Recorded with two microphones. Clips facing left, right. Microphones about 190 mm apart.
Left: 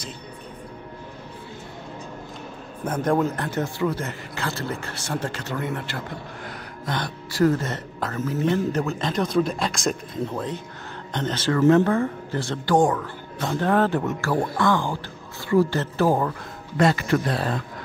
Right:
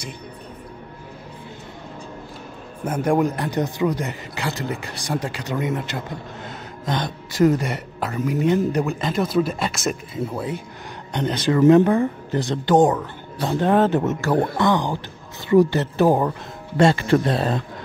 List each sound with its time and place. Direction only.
2.8 s speech: 10° right (ahead or behind)